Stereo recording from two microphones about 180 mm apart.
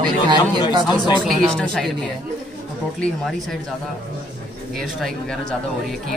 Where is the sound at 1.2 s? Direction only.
Centre (ahead or behind).